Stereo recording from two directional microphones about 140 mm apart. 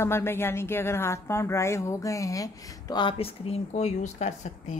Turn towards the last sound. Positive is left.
turn(degrees=55)  # may be behind; listen again after turning